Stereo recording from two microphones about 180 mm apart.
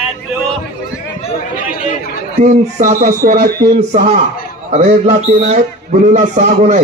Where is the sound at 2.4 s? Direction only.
40° right (ahead or behind); by 3.8 s 60° right (ahead or behind).